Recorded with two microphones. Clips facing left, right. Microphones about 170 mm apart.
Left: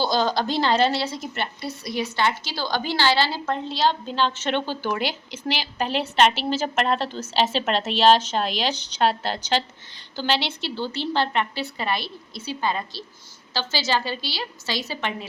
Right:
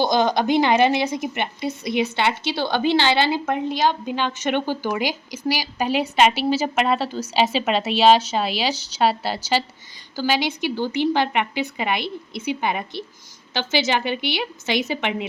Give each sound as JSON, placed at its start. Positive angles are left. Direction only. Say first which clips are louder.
{"t": 0.0, "sound": "a woman's voice", "louder": "right 3 dB", "side_deg": -20}